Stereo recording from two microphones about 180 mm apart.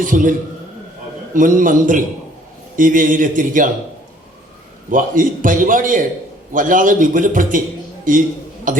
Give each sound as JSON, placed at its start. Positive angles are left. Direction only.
{"t": 0.0, "sound": "a man's voice", "side_deg": -50}
{"t": 4.9, "sound": "a man's voice", "side_deg": -50}